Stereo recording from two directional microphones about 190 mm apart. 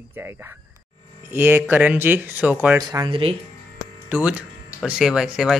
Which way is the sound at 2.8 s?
20° right (ahead or behind).